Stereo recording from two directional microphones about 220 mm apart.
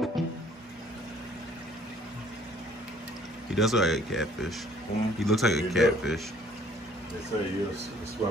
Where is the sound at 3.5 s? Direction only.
Centre (ahead or behind).